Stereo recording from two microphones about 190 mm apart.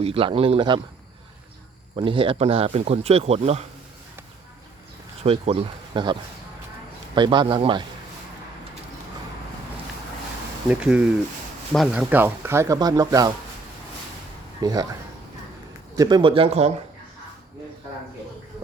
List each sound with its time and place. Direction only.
0.0 s speech: 30° right (ahead or behind)
2.0 s speech: 25° right (ahead or behind)
5.2 s speech: 30° right (ahead or behind)
7.2 s speech: 25° right (ahead or behind)
10.7 s speech: 5° right (ahead or behind)
14.6 s speech: 20° right (ahead or behind)
16.0 s speech: 25° right (ahead or behind)